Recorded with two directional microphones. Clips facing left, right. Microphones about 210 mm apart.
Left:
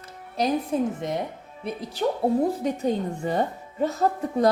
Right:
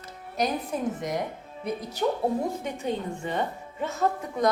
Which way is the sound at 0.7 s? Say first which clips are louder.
Left 6 dB; 25° left (ahead or behind).